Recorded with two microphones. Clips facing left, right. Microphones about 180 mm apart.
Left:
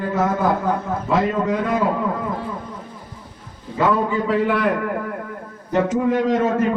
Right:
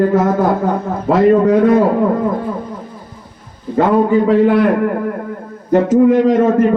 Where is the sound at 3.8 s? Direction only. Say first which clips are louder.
Right 7 dB; 60° right (ahead or behind).